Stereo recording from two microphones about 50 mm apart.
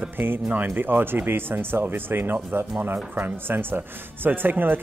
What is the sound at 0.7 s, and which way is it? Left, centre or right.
Speech, right.